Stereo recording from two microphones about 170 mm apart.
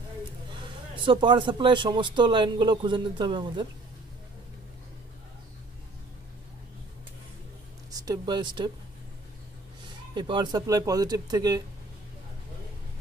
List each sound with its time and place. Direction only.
0.9 s a man's voice: 30° right (ahead or behind)
7.9 s speech: 20° right (ahead or behind)
10.1 s a man's voice: 25° right (ahead or behind)